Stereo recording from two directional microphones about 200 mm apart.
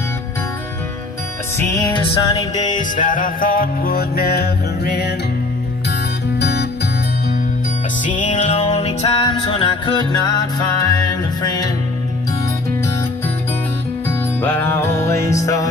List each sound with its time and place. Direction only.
1.6 s music: 15° left (ahead or behind)
3.0 s music: 40° left (ahead or behind)
6.4 s music: 55° left (ahead or behind)
8.0 s music: 40° left (ahead or behind); by 10.9 s 20° left (ahead or behind)
14.0 s music: 10° left (ahead or behind)